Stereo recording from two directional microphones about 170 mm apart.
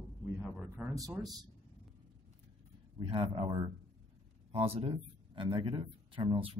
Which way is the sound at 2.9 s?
30° right (ahead or behind).